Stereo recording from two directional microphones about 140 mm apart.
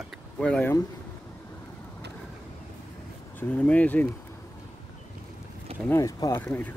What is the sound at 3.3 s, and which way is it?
Speech, 10° left (ahead or behind).